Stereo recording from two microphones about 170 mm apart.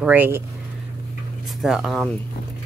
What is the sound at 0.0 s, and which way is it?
Speech, 10° right (ahead or behind).